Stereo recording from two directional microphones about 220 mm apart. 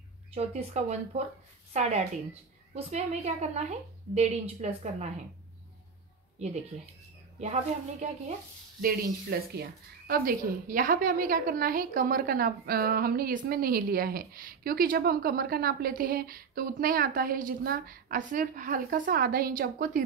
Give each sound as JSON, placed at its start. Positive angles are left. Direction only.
{"t": 0.3, "sound": "a woman's voice", "side_deg": -30}
{"t": 8.8, "sound": "a woman's voice", "side_deg": -45}